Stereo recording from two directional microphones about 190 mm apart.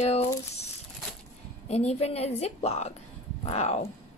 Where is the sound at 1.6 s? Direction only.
35° left (ahead or behind).